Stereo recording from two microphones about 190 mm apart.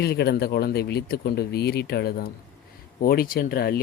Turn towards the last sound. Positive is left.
turn(degrees=55)  # may be behind; listen again after turning